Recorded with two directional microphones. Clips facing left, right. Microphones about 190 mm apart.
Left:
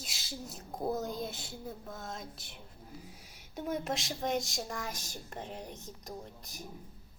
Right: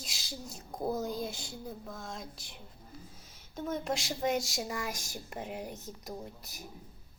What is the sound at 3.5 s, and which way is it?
Speech, 10° left (ahead or behind).